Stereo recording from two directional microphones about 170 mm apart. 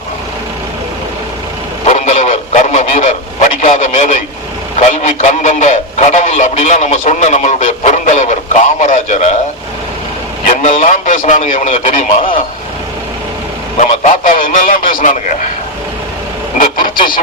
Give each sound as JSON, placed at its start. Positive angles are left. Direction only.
{"t": 1.9, "sound": "radio", "side_deg": 40}
{"t": 4.8, "sound": "a man's voice", "side_deg": 45}
{"t": 10.4, "sound": "a man's voice", "side_deg": 45}
{"t": 13.7, "sound": "a man's voice", "side_deg": 45}
{"t": 16.6, "sound": "vehicle", "side_deg": 55}